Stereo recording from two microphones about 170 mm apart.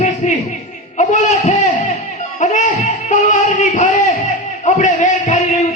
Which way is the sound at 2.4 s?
45° left (ahead or behind).